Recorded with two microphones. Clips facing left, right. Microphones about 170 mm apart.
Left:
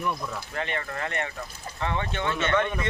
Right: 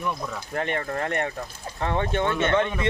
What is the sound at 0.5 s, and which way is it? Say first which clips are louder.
Speech: right 6 dB; 45° right (ahead or behind).